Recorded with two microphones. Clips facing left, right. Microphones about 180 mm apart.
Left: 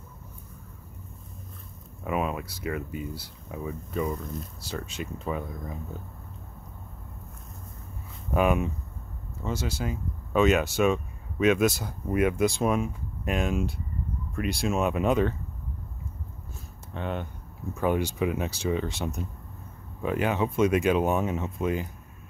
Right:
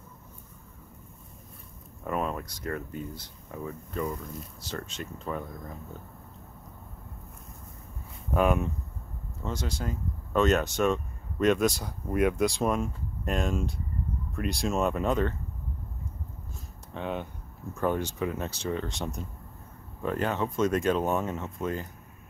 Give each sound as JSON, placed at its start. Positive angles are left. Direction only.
{"t": 2.0, "sound": "speech", "side_deg": 5}
{"t": 8.3, "sound": "speech", "side_deg": 5}
{"t": 16.9, "sound": "speech", "side_deg": 0}
{"t": 17.7, "sound": "speech", "side_deg": 10}